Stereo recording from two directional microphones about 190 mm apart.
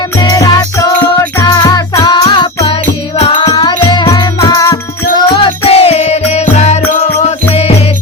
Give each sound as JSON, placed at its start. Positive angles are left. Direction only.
{"t": 0.2, "sound": "music", "side_deg": 20}